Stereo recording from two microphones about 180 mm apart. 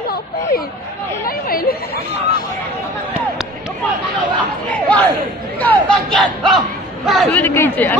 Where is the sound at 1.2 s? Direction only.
55° left (ahead or behind).